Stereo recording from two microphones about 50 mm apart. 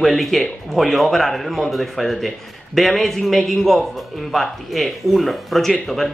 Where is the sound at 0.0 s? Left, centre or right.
Centre.